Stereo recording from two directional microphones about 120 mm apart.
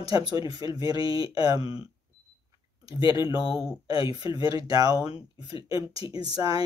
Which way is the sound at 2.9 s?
45° left (ahead or behind).